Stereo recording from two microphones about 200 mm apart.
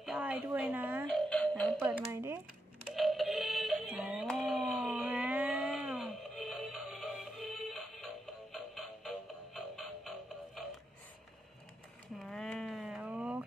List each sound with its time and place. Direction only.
0.0 s a woman's voice: 5° right (ahead or behind)
1.0 s music: 5° left (ahead or behind)
1.8 s telephone: 10° right (ahead or behind)
2.9 s synthetic singing: centre (ahead or behind)
12.2 s a sound: 5° left (ahead or behind)